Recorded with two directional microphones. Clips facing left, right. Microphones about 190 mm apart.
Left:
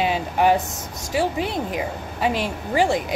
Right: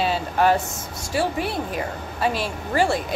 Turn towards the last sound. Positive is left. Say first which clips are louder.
# left 1 dB
turn(degrees=15)  # may be behind; listen again after turning